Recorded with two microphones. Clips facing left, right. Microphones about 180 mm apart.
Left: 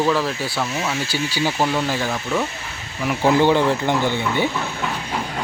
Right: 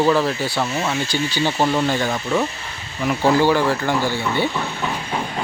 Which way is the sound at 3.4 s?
20° left (ahead or behind).